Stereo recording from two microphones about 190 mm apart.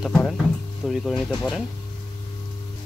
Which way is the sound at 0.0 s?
Centre (ahead or behind).